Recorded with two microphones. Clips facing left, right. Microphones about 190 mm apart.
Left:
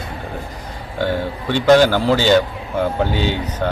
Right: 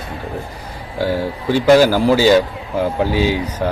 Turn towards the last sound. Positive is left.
turn(degrees=-5)  # may be behind; listen again after turning